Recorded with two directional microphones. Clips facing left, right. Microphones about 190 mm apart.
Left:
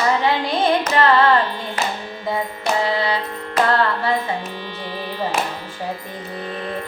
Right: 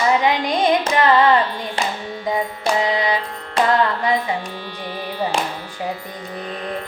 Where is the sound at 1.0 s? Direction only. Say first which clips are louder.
Even; 15° right (ahead or behind).